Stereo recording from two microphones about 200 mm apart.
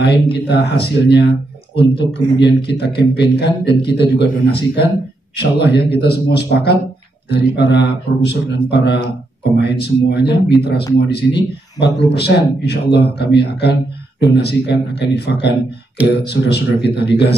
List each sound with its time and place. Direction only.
0.0 s a man's voice: 55° left (ahead or behind)